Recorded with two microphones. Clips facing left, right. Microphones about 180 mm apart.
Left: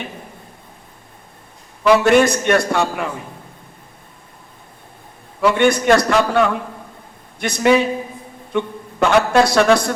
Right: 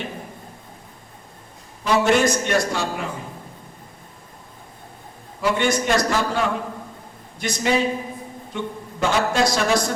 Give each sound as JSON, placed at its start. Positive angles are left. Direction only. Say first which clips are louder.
{"t": 1.8, "sound": "a man's voice", "louder": "left 6 dB", "side_deg": 65}
{"t": 5.4, "sound": "a man's voice", "louder": "left 6 dB", "side_deg": 60}